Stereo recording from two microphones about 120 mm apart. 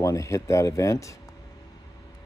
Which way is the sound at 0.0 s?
25° left (ahead or behind).